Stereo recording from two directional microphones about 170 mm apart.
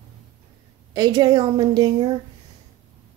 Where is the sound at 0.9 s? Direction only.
20° right (ahead or behind).